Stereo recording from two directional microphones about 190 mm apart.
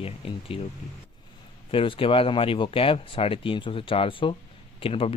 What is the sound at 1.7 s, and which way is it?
Speech, 30° left (ahead or behind).